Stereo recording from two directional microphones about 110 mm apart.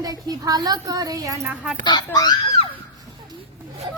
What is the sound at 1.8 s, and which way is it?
Speech, 40° left (ahead or behind).